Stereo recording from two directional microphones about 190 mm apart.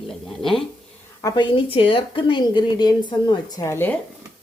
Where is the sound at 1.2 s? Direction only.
20° left (ahead or behind).